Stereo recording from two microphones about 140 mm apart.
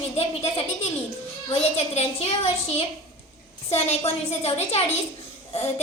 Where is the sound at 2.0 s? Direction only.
45° left (ahead or behind).